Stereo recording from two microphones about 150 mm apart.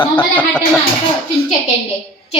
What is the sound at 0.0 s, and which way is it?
Speech, 10° left (ahead or behind).